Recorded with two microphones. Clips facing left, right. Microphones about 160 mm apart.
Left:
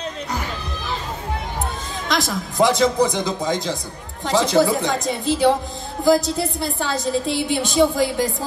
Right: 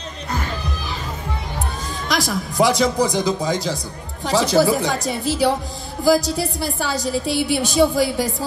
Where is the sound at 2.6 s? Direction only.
25° left (ahead or behind).